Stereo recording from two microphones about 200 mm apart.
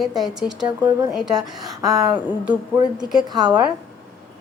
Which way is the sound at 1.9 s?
20° right (ahead or behind).